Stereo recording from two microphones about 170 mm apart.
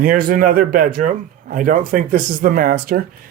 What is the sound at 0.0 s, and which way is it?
Speech, 55° right (ahead or behind).